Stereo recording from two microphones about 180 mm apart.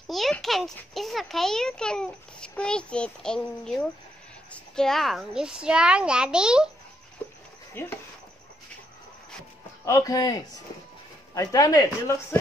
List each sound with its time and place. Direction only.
0.1 s a child's voice: centre (ahead or behind)
7.2 s a sound: 10° left (ahead or behind)
7.8 s speech: 10° left (ahead or behind)
9.8 s speech: 20° left (ahead or behind)